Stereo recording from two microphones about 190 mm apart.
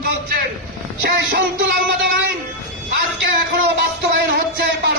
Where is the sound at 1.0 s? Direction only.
65° right (ahead or behind).